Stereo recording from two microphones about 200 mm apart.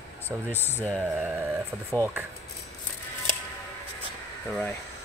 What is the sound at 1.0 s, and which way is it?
Speech, 10° right (ahead or behind).